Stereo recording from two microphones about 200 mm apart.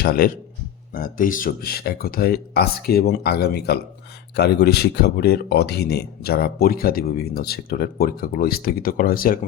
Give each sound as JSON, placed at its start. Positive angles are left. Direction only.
{"t": 0.2, "sound": "speech", "side_deg": 50}